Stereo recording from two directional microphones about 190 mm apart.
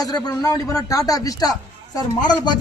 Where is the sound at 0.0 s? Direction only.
20° left (ahead or behind).